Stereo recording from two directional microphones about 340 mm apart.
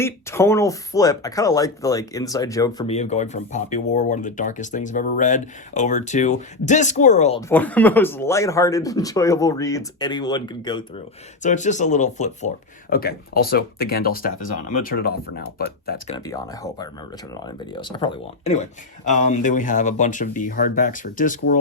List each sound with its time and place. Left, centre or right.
0.0 s speech: centre; by 16.1 s left
16.1 s speech: centre